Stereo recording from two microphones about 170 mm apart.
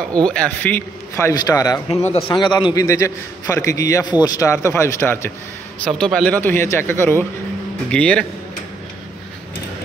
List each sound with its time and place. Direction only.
0.1 s a man's voice: 5° left (ahead or behind)
5.9 s a man's voice: centre (ahead or behind)